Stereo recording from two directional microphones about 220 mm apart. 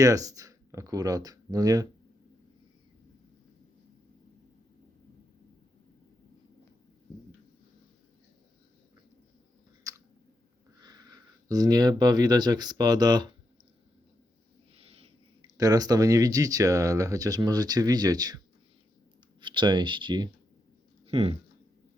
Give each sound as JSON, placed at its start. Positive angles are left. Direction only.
{"t": 0.0, "sound": "speech", "side_deg": -15}
{"t": 9.9, "sound": "chewing", "side_deg": -15}
{"t": 10.8, "sound": "speech", "side_deg": -20}
{"t": 15.5, "sound": "speech", "side_deg": -15}
{"t": 19.4, "sound": "speech", "side_deg": -20}
{"t": 21.1, "sound": "a sound", "side_deg": -25}